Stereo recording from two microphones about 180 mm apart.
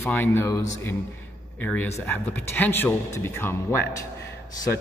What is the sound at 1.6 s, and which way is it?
Speech, 10° left (ahead or behind).